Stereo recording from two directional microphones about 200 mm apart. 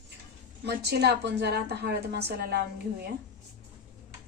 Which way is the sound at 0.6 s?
55° right (ahead or behind).